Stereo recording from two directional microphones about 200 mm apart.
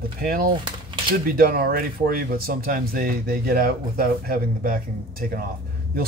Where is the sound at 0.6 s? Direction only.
25° right (ahead or behind).